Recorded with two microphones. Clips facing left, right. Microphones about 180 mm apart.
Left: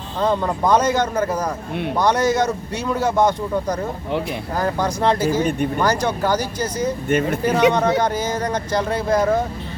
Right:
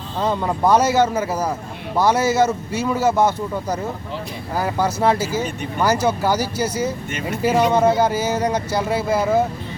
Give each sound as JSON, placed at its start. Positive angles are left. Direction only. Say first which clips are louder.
{"t": 0.2, "sound": "speech", "louder": "left 1 dB", "side_deg": -10}
{"t": 5.4, "sound": "speech", "louder": "left 5 dB", "side_deg": 55}
{"t": 5.8, "sound": "speech", "louder": "right 4 dB", "side_deg": -5}
{"t": 7.1, "sound": "speech", "louder": "left 8 dB", "side_deg": 55}
{"t": 7.7, "sound": "speech", "louder": "right 2 dB", "side_deg": -5}